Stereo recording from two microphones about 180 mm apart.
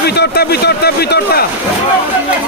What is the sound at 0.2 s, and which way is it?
Speech, 65° left (ahead or behind).